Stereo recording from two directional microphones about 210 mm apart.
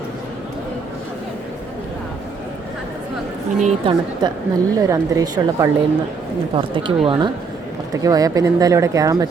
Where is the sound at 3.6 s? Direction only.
25° right (ahead or behind).